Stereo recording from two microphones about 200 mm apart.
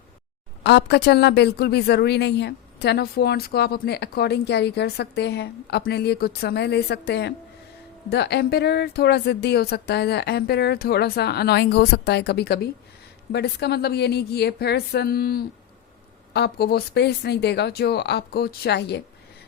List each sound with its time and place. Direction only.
0.6 s a woman's voice: 60° left (ahead or behind)